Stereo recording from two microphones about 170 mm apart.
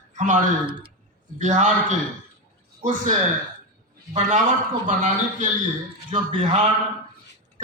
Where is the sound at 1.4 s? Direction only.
45° right (ahead or behind).